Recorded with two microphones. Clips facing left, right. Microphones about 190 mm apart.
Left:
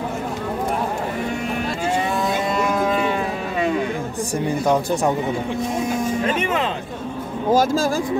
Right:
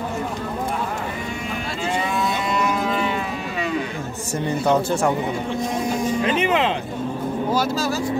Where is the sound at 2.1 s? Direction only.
45° left (ahead or behind).